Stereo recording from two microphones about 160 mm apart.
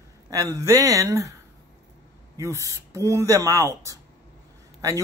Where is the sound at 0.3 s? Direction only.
20° right (ahead or behind).